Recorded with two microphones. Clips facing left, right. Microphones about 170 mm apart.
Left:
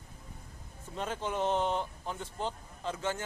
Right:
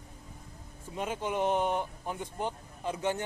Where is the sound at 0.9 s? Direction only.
10° right (ahead or behind).